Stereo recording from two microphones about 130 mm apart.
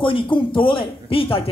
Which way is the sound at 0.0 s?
40° left (ahead or behind).